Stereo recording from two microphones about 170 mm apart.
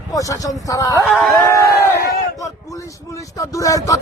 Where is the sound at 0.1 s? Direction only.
20° left (ahead or behind).